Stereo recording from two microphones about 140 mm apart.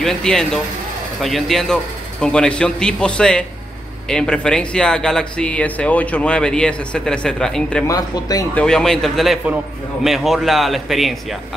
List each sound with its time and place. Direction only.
0.0 s speech: 5° left (ahead or behind)
7.8 s speech: 25° left (ahead or behind)
8.5 s speech: 5° left (ahead or behind)